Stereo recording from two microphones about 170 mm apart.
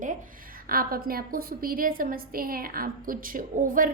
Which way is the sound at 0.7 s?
60° right (ahead or behind).